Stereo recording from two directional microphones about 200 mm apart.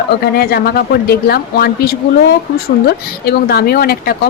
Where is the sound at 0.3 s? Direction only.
50° left (ahead or behind).